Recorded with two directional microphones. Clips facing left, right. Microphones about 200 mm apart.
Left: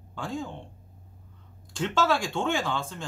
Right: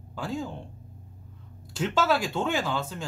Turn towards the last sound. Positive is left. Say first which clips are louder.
# right 1 dB
turn(degrees=-5)  # may be behind; listen again after turning